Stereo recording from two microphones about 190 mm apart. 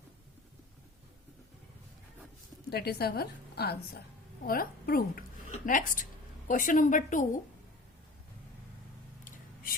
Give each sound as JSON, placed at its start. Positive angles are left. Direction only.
{"t": 2.6, "sound": "a woman's voice", "side_deg": 55}